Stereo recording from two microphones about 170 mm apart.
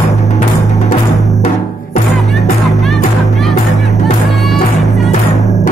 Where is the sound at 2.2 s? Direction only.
Centre (ahead or behind).